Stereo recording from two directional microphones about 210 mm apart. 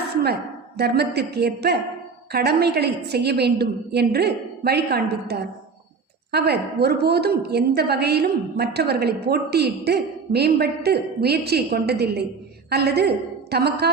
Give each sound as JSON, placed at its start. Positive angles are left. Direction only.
{"t": 0.8, "sound": "a woman's voice", "side_deg": -50}